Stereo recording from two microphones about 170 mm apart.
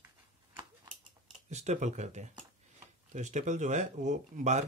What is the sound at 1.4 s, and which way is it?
Speech, 40° right (ahead or behind).